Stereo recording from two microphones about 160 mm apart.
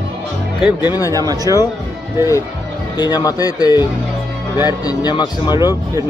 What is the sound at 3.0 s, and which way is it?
Speech, 25° left (ahead or behind).